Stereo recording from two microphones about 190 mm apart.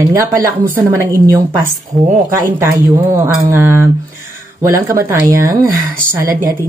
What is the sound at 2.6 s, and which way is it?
Speech, 10° right (ahead or behind).